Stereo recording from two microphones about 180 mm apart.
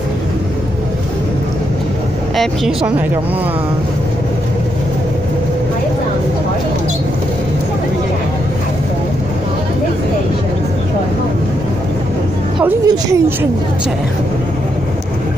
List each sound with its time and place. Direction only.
2.3 s a woman's voice: centre (ahead or behind)
12.8 s a woman's voice: 20° right (ahead or behind)